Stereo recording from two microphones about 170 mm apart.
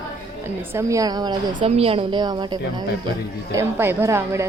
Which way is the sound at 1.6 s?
35° right (ahead or behind).